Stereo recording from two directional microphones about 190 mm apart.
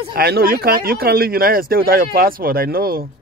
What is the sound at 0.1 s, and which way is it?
Speech, 55° right (ahead or behind).